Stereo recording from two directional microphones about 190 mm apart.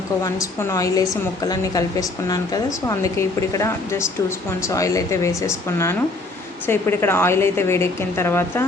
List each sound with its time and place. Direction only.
0.7 s a woman's voice: 15° left (ahead or behind)